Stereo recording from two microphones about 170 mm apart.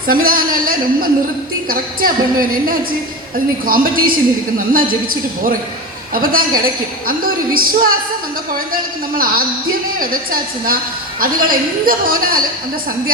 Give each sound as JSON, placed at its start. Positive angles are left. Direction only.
{"t": 0.1, "sound": "a woman's voice", "side_deg": -55}
{"t": 7.1, "sound": "a woman's voice", "side_deg": -60}